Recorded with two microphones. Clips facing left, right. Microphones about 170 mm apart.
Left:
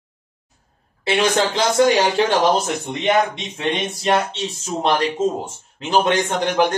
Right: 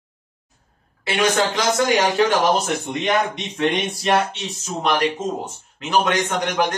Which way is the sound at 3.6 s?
25° left (ahead or behind).